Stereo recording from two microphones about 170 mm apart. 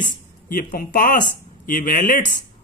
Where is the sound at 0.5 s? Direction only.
55° left (ahead or behind).